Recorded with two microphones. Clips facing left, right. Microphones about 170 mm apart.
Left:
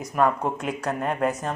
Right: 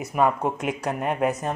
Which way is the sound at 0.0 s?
10° right (ahead or behind).